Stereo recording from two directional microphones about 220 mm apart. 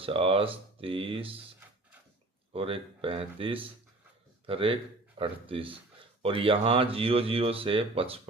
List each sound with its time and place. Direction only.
0.0 s speech: 25° right (ahead or behind)
2.5 s speech: 25° right (ahead or behind)